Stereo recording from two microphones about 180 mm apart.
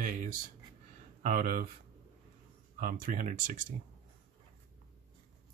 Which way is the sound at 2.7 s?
50° right (ahead or behind).